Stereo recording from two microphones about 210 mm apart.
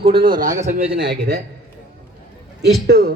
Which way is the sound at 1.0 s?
55° right (ahead or behind).